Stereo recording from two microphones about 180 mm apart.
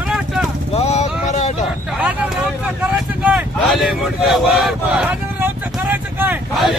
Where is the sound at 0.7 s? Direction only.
35° left (ahead or behind).